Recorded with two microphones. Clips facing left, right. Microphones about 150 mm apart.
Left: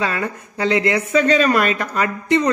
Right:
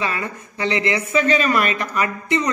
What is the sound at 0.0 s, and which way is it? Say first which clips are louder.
Speech: left 3 dB; 50° left (ahead or behind).